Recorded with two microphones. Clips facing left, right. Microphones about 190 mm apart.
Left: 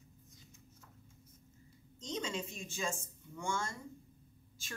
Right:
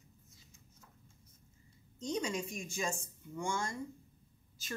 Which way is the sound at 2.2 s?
10° right (ahead or behind).